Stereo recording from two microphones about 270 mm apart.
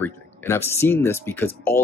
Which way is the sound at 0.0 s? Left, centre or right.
Centre.